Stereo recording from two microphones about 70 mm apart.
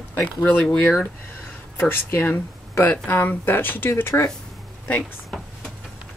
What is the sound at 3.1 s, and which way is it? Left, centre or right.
Speech, left.